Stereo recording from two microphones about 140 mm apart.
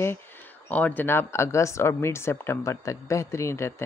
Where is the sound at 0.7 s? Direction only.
10° left (ahead or behind).